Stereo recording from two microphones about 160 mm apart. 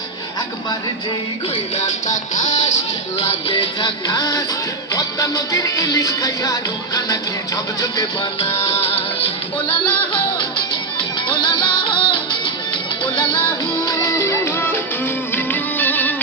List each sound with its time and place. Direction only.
1.7 s music: 50° left (ahead or behind); by 8.3 s 20° left (ahead or behind)
8.4 s music: 40° left (ahead or behind)
10.9 s music: 30° left (ahead or behind)
13.8 s music: 20° left (ahead or behind)